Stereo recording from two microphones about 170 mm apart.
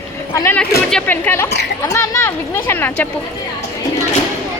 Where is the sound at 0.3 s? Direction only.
10° left (ahead or behind).